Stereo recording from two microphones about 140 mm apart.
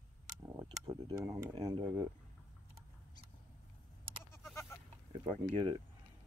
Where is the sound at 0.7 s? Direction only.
40° right (ahead or behind).